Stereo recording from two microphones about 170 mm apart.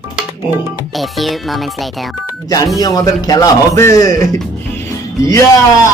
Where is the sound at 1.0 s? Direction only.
Centre (ahead or behind).